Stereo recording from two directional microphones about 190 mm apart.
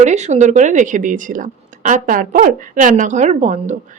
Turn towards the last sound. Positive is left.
turn(degrees=-40)  # may be behind; listen again after turning